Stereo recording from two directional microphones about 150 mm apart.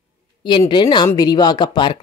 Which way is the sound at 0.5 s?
35° left (ahead or behind).